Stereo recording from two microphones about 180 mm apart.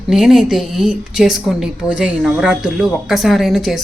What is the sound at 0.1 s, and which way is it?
Speech, centre (ahead or behind).